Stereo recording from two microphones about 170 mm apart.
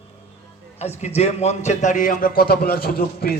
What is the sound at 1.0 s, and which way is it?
A man's voice, 40° left (ahead or behind).